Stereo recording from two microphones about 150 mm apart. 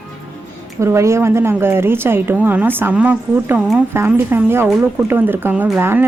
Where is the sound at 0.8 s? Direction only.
20° right (ahead or behind).